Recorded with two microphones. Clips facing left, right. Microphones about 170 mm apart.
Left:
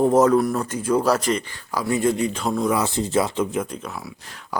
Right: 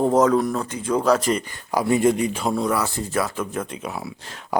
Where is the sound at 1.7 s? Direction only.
20° right (ahead or behind).